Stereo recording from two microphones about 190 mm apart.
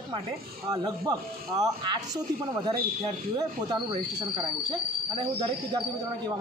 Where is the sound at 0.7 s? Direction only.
20° right (ahead or behind).